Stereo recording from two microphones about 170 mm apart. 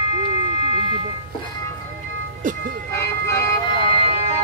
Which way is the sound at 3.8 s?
35° left (ahead or behind).